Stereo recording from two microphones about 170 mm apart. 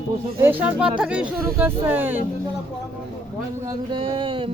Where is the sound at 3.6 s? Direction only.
25° right (ahead or behind).